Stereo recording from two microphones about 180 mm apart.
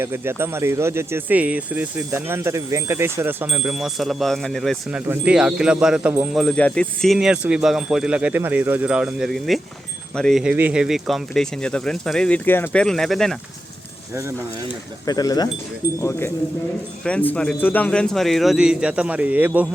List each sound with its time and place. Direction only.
0.0 s speech: 15° right (ahead or behind)
6.4 s speech: 5° left (ahead or behind)
15.0 s speech: 20° left (ahead or behind); by 19.6 s 10° right (ahead or behind)